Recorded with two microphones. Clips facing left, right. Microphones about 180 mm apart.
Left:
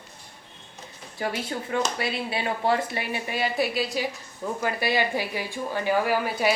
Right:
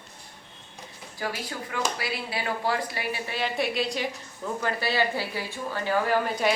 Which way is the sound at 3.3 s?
5° left (ahead or behind).